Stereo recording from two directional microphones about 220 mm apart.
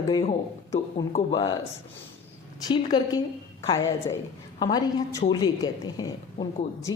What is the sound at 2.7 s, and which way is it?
A woman's voice, 20° left (ahead or behind).